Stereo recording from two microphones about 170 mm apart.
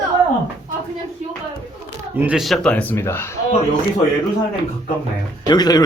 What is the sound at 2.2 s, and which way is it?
Speech, 5° right (ahead or behind).